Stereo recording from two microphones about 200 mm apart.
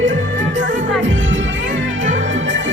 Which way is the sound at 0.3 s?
40° right (ahead or behind).